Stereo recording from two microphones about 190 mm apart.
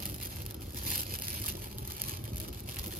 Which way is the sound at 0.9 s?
45° right (ahead or behind).